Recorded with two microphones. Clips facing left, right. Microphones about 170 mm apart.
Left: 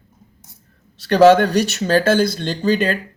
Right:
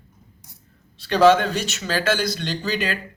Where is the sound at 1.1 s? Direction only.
65° left (ahead or behind).